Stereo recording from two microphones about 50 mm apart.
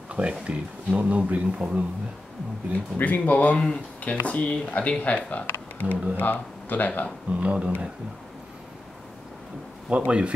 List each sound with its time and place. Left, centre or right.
0.1 s speech: right
2.7 s speech: left
5.5 s a sound: left
6.1 s speech: left
7.3 s speech: right
10.0 s speech: right